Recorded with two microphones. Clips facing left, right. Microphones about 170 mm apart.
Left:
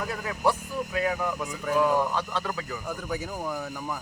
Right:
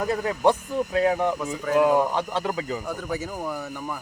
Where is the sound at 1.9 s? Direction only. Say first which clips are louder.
Right 4 dB; 20° right (ahead or behind).